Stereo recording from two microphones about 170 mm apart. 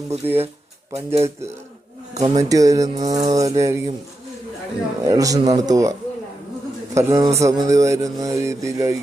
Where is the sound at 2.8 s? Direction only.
40° right (ahead or behind).